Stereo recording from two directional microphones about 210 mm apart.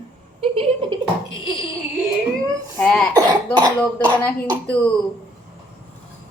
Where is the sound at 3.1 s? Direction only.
20° right (ahead or behind).